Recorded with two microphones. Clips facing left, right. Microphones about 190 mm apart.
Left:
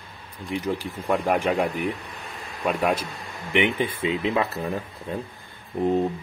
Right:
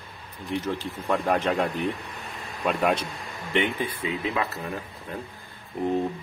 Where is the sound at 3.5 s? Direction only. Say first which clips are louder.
Left 3 dB; 20° left (ahead or behind).